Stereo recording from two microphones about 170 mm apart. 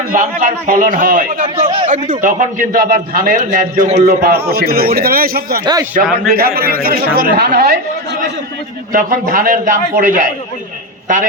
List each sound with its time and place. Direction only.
0.1 s a man's voice: 55° right (ahead or behind)
1.6 s speech: 30° right (ahead or behind)
2.0 s a man's voice: 50° right (ahead or behind)
4.0 s a man's voice: 60° right (ahead or behind)
8.9 s a man's voice: 55° right (ahead or behind)